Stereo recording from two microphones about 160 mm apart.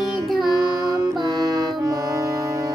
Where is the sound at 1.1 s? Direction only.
25° right (ahead or behind).